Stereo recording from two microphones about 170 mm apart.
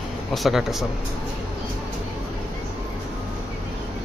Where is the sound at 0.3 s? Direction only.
Centre (ahead or behind).